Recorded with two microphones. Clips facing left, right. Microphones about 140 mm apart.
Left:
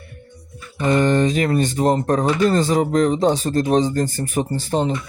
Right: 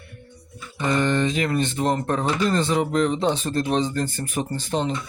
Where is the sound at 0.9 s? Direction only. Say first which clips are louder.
Left 5 dB; 40° left (ahead or behind).